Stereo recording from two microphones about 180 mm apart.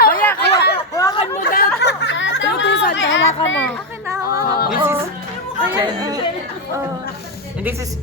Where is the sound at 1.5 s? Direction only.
60° left (ahead or behind); by 3.2 s 85° left.